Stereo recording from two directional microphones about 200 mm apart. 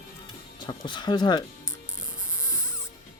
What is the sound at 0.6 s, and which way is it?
Speech, 20° left (ahead or behind).